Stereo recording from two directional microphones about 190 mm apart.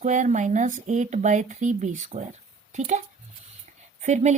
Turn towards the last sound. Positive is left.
turn(degrees=-40)  # may be behind; listen again after turning